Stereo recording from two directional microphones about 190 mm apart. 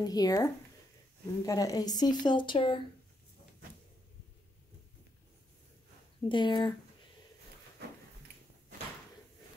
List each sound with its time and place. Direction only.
0.0 s speech: 20° left (ahead or behind)
6.2 s speech: 25° left (ahead or behind)
7.8 s a sound: 60° right (ahead or behind)